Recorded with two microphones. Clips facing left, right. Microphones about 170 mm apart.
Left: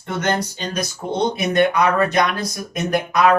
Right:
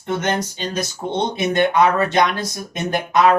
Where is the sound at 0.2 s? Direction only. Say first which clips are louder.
Even; 20° right (ahead or behind).